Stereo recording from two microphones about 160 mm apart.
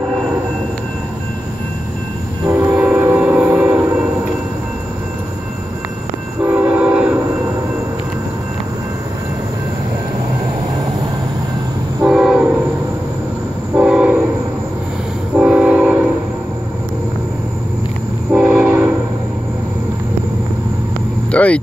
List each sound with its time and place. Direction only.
2.4 s train: 25° right (ahead or behind)
2.7 s train: 10° right (ahead or behind)
6.4 s train: 10° right (ahead or behind)
12.1 s train: 5° right (ahead or behind)
13.7 s train: 5° right (ahead or behind)
15.3 s train: 5° right (ahead or behind)
18.3 s train: 5° right (ahead or behind)
21.3 s vehicle: 10° left (ahead or behind)